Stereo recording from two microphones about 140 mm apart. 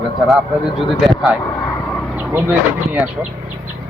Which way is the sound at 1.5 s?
20° left (ahead or behind).